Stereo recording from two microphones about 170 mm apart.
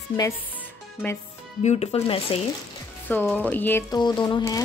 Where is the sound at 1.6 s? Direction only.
40° left (ahead or behind).